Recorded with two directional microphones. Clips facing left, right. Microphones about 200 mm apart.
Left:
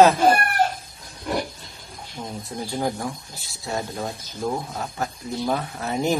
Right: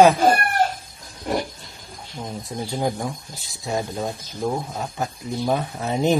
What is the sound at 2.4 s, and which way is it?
Speech, 15° right (ahead or behind).